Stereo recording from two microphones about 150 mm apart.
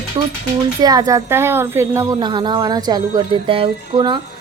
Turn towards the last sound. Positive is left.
turn(degrees=-30)  # may be behind; listen again after turning